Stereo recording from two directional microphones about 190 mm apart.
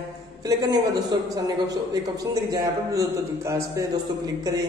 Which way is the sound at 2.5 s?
15° right (ahead or behind).